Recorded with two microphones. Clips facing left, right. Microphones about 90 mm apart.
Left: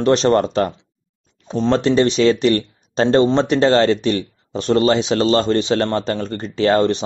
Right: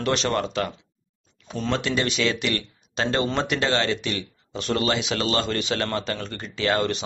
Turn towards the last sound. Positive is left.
turn(degrees=35)  # may be behind; listen again after turning